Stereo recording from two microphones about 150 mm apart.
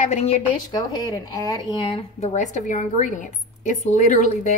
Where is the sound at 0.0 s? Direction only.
45° left (ahead or behind).